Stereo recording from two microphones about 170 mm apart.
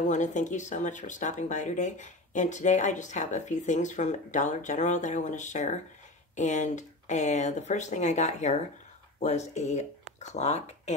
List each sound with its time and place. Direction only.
0.1 s speech: 45° left (ahead or behind)